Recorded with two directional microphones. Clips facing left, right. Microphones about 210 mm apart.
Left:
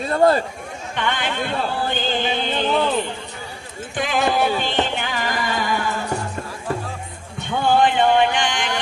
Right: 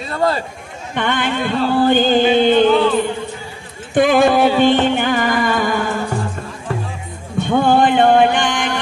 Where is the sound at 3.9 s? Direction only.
50° right (ahead or behind).